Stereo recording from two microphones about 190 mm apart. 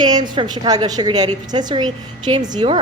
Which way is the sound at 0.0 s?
20° right (ahead or behind).